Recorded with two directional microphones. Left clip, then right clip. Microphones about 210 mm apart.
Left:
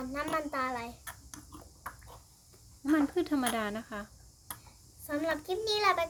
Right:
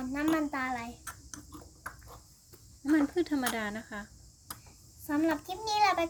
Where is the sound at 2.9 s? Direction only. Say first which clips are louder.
Right 1 dB; 5° left (ahead or behind).